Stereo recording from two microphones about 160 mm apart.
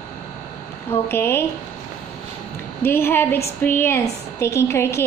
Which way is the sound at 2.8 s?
15° left (ahead or behind).